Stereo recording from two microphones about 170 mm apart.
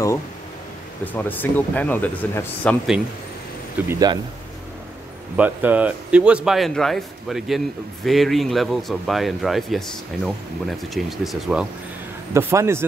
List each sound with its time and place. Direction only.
1.0 s speech: 10° left (ahead or behind)
3.9 s speech: 25° right (ahead or behind)
5.3 s speech: 10° right (ahead or behind)
12.4 s speech: 15° right (ahead or behind)